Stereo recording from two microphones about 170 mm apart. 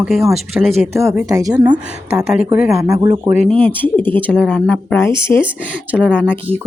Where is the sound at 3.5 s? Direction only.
10° left (ahead or behind).